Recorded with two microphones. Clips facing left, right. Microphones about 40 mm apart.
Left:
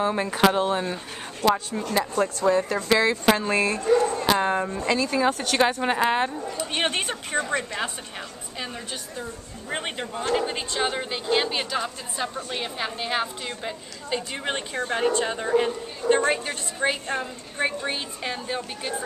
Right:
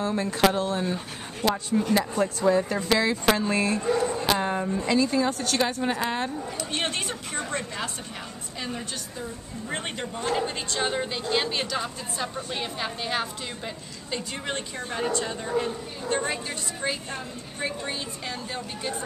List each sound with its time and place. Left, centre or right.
0.0 s a woman's voice: left
0.8 s a sound: centre
1.7 s speech: centre
2.9 s a woman's voice: centre
3.5 s speech: centre
4.3 s a woman's voice: centre
4.8 s speech: centre
5.4 s a woman's voice: left
9.2 s a woman's voice: centre; by 15.7 s left
16.0 s a woman's voice: centre
16.4 s a woman's voice: left